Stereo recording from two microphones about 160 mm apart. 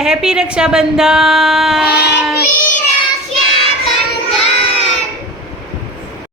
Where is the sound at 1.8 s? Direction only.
90° left.